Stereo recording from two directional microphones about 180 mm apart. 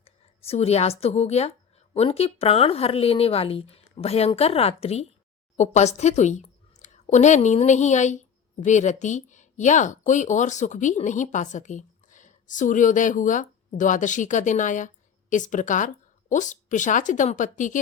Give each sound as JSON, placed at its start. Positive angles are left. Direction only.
{"t": 0.0, "sound": "a woman's voice", "side_deg": 35}